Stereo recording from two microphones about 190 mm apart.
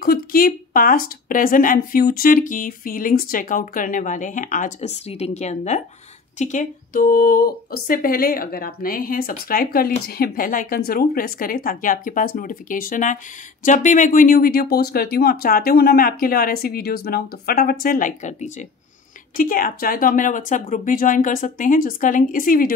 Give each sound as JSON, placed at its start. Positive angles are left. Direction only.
{"t": 0.0, "sound": "speech", "side_deg": 50}